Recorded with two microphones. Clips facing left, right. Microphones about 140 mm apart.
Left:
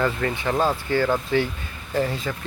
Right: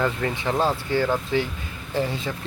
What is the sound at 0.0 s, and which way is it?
Speech, 10° right (ahead or behind).